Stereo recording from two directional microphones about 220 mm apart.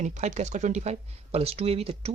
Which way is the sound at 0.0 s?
35° right (ahead or behind).